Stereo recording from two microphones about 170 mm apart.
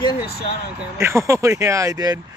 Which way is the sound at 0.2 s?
65° left (ahead or behind).